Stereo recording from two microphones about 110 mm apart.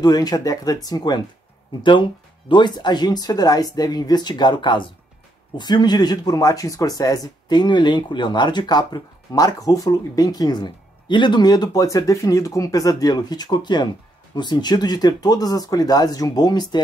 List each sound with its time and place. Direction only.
0.0 s speech: 35° left (ahead or behind)
1.8 s speech: 50° left (ahead or behind)